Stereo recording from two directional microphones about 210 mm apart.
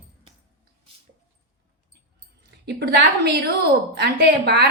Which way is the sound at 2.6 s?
55° right (ahead or behind).